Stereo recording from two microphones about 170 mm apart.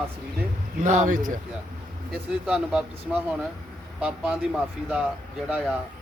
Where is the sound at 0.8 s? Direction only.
45° right (ahead or behind).